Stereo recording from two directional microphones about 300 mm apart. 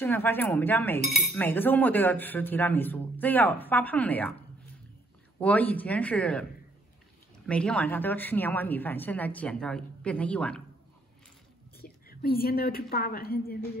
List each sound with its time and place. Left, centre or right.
0.0 s speech: centre
5.4 s speech: centre
7.4 s speech: centre
11.8 s a woman's voice: left